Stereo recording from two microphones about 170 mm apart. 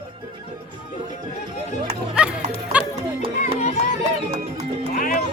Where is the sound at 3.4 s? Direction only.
45° left (ahead or behind).